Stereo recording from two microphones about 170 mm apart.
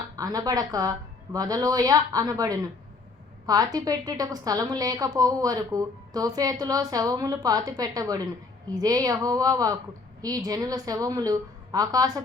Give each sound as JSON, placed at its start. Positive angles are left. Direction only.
{"t": 0.2, "sound": "a woman's voice", "side_deg": -20}